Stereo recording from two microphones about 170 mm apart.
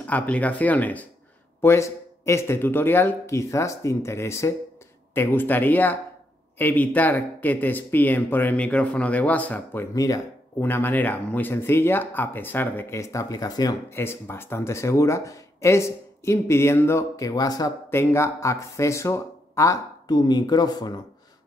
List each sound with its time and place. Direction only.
0.0 s speech: 10° left (ahead or behind)
9.9 s speech: 20° left (ahead or behind)